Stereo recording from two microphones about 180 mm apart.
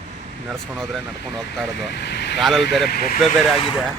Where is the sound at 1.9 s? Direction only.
70° left (ahead or behind).